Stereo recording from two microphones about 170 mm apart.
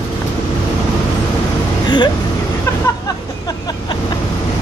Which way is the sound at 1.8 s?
25° left (ahead or behind).